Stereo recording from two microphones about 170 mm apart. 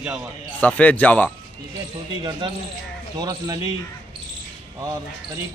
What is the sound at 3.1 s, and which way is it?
Speech, 20° right (ahead or behind).